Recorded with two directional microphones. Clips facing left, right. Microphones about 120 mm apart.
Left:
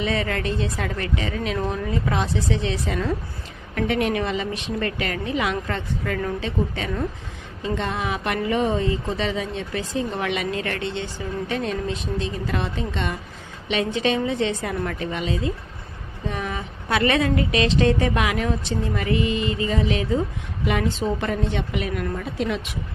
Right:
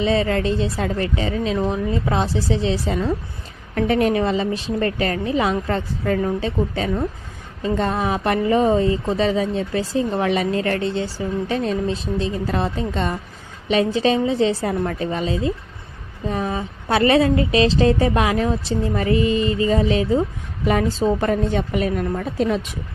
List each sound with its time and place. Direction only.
0.0 s a woman's voice: 30° right (ahead or behind)